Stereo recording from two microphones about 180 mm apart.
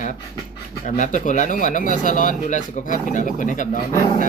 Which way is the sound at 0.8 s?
45° left (ahead or behind).